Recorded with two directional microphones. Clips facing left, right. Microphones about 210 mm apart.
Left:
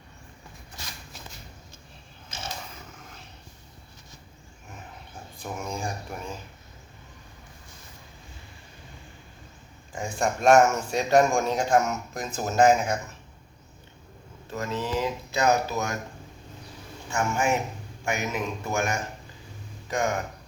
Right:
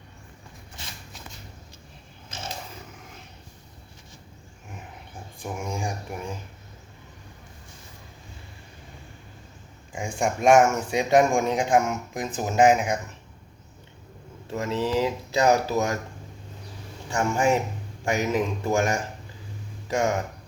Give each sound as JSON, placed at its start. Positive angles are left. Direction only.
{"t": 5.4, "sound": "a man's voice", "side_deg": -10}
{"t": 10.2, "sound": "a man's voice", "side_deg": -10}
{"t": 14.5, "sound": "speech", "side_deg": -30}
{"t": 17.1, "sound": "speech", "side_deg": -35}